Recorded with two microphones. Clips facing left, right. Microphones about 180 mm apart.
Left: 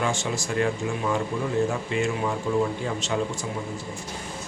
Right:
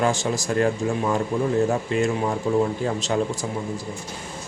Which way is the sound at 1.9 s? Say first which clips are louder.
Right 4 dB; 40° right (ahead or behind).